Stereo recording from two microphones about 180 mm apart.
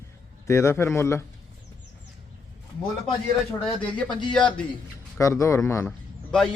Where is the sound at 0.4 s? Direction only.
15° left (ahead or behind).